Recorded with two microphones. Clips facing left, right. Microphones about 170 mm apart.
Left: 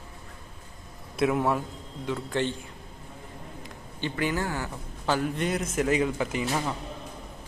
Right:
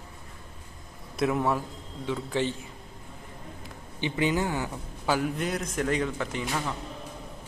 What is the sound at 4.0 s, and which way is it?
A man's voice, 20° right (ahead or behind).